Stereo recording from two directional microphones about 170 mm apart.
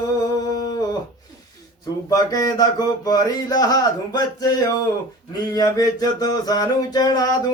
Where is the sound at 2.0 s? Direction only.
20° left (ahead or behind).